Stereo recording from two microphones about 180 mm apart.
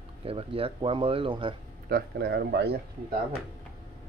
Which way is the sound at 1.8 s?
60° right (ahead or behind).